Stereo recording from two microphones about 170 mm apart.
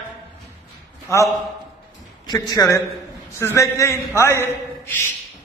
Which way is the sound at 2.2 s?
25° left (ahead or behind).